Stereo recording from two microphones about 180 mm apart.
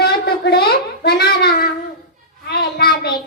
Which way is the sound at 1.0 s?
60° left (ahead or behind).